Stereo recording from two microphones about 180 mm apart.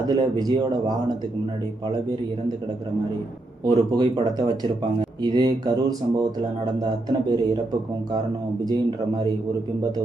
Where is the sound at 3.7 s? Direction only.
25° right (ahead or behind).